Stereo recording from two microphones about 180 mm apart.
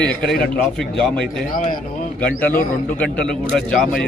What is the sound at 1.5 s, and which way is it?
Speech, 45° left (ahead or behind).